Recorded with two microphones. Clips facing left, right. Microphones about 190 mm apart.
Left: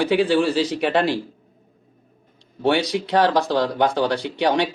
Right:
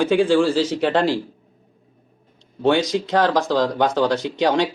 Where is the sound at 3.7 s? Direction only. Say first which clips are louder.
Right 1 dB; 10° left (ahead or behind).